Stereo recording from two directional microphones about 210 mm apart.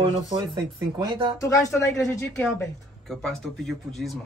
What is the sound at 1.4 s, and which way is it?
Speech, 15° left (ahead or behind).